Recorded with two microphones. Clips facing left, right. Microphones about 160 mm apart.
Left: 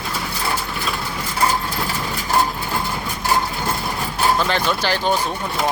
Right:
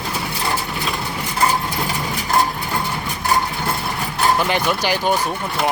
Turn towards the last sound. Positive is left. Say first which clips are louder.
# right 1 dB
turn(degrees=-10)  # may be behind; listen again after turning